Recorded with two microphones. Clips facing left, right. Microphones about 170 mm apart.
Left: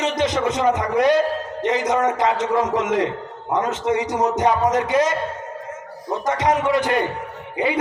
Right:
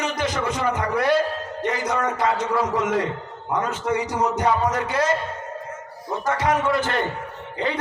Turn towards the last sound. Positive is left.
turn(degrees=10)  # may be behind; listen again after turning